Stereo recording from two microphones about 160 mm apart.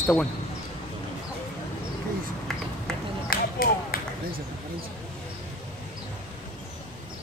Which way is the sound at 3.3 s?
65° left (ahead or behind).